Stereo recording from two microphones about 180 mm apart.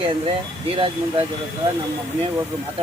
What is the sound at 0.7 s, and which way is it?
Speech, 30° right (ahead or behind).